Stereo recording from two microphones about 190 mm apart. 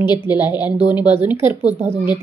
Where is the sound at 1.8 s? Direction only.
10° right (ahead or behind).